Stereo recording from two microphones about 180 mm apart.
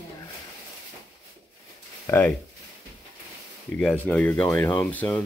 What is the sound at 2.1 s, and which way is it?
Speech, 15° left (ahead or behind).